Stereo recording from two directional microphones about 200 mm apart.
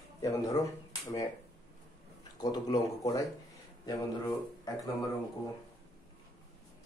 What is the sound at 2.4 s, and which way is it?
Speech, 20° left (ahead or behind).